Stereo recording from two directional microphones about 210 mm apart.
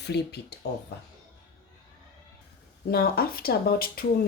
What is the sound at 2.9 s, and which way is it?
Speech, 45° left (ahead or behind).